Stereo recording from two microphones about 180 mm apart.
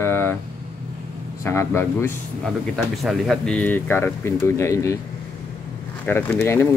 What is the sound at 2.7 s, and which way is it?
Speech, centre (ahead or behind).